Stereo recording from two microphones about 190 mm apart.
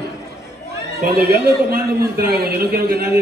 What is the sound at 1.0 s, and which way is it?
A man's voice, 55° right (ahead or behind).